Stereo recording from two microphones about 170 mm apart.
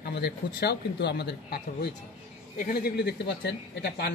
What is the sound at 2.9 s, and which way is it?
Speech, 80° left.